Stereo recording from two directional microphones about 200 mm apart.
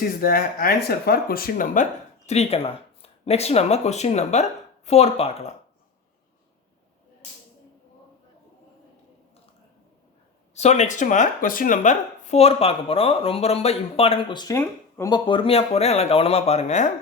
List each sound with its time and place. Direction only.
0.0 s speech: 45° left (ahead or behind); by 5.5 s 30° left (ahead or behind)
10.5 s speech: 35° left (ahead or behind)